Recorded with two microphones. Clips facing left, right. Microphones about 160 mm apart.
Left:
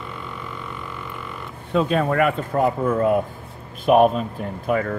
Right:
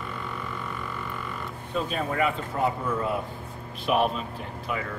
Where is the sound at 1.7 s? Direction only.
80° left; by 4.9 s 50° left (ahead or behind).